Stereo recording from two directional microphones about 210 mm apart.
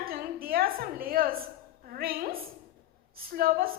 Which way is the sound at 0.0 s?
45° right (ahead or behind).